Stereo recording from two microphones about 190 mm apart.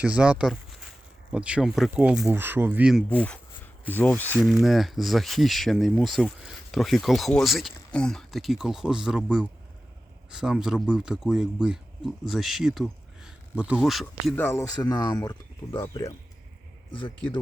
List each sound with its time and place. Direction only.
0.0 s speech: 5° right (ahead or behind)
3.1 s speech: 5° left (ahead or behind)
4.4 s speech: centre (ahead or behind); by 17.4 s 25° left (ahead or behind)